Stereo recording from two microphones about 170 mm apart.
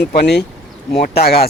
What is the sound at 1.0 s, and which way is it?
Speech, 65° left (ahead or behind).